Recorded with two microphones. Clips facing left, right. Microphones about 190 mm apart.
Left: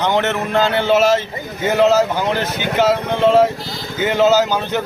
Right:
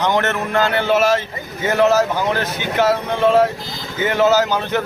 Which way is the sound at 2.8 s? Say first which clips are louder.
Left 1 dB; 20° left (ahead or behind).